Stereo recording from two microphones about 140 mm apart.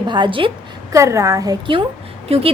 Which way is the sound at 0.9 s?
20° right (ahead or behind).